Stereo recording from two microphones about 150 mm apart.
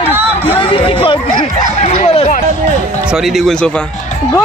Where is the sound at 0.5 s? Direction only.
35° left (ahead or behind).